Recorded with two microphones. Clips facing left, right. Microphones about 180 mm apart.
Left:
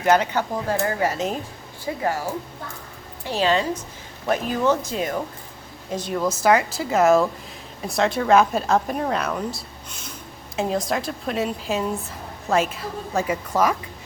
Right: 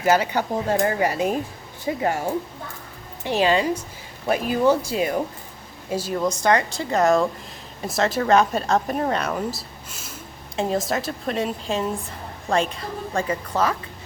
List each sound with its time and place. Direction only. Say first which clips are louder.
0.0 s speech: left 1 dB; 10° right (ahead or behind)
2.0 s speech: right 1 dB; 25° right (ahead or behind)
3.2 s a woman's voice: right 2 dB; 15° right (ahead or behind); by 13.7 s 10° left (ahead or behind)